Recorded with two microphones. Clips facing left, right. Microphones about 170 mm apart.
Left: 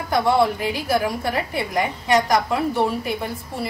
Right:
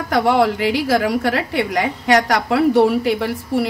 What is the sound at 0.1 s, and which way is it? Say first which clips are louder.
A woman's voice: right 3 dB; 80° right.